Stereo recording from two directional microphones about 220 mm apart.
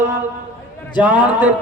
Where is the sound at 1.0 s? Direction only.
5° right (ahead or behind).